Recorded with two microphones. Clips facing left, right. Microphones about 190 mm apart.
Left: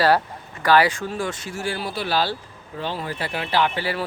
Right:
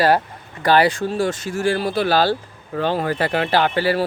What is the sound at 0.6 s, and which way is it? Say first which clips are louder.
Speech: right 2 dB; 30° right (ahead or behind).